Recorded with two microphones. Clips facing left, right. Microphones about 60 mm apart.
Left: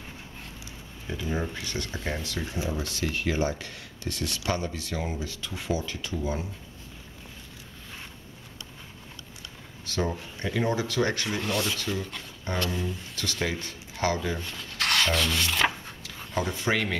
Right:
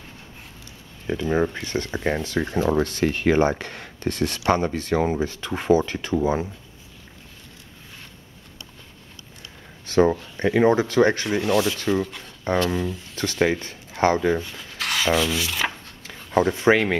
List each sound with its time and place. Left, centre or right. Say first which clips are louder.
1.1 s speech: right 9 dB; right
9.8 s a sound: right 12 dB; right
10.6 s speech: right 9 dB; right
11.2 s speech: right 8 dB; centre
13.5 s speech: right 8 dB; right
14.4 s rub: even; centre
16.5 s speech: right 9 dB; right